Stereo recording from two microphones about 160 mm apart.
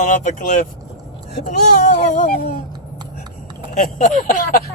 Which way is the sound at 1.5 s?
50° left (ahead or behind).